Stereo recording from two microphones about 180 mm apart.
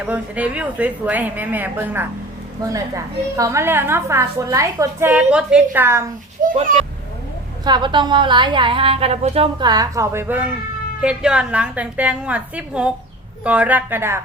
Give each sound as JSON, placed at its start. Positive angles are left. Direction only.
{"t": 0.0, "sound": "a woman's voice", "side_deg": -10}
{"t": 6.4, "sound": "a sound", "side_deg": -45}
{"t": 7.6, "sound": "a woman's voice", "side_deg": -25}